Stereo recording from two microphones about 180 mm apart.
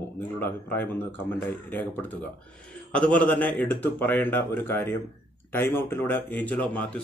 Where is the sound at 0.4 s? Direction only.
10° left (ahead or behind).